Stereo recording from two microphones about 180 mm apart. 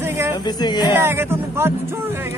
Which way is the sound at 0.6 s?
25° left (ahead or behind).